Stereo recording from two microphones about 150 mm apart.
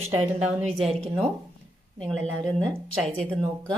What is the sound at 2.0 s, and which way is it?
A woman's voice, 5° left (ahead or behind).